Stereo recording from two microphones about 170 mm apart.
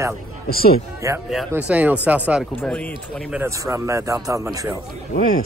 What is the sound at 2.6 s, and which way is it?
Speech, 10° left (ahead or behind).